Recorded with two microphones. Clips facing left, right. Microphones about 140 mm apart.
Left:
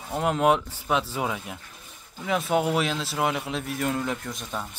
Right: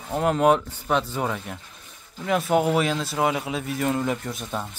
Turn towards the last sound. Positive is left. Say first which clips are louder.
# right 3 dB
turn(degrees=-5)  # may be behind; listen again after turning